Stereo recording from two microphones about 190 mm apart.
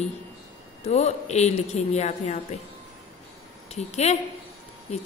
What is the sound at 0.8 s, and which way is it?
A woman's voice, 35° left (ahead or behind).